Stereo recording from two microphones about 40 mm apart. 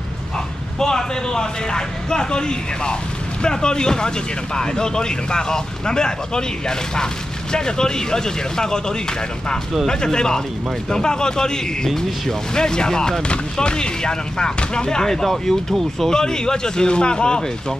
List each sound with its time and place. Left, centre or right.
0.7 s speech: centre
16.1 s speech: centre